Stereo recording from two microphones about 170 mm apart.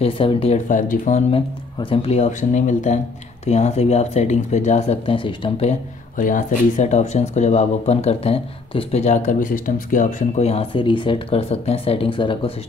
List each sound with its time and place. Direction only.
0.0 s speech: 35° left (ahead or behind)
0.7 s speech: 50° left (ahead or behind)
1.8 s speech: 35° left (ahead or behind)